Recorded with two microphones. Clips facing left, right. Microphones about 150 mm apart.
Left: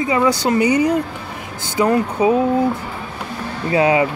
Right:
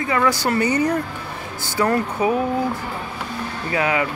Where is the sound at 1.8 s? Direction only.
20° left (ahead or behind).